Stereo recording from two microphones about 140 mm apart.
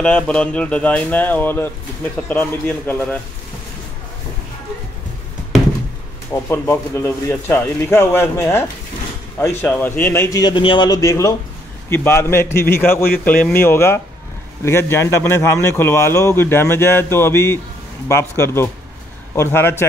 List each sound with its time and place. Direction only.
0.0 s a man's voice: 5° left (ahead or behind)
6.3 s a man's voice: 15° left (ahead or behind)
10.4 s a man's voice: 35° left (ahead or behind); by 19.9 s 15° left (ahead or behind)